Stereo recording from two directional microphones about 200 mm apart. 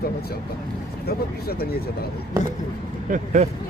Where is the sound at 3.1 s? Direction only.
35° right (ahead or behind).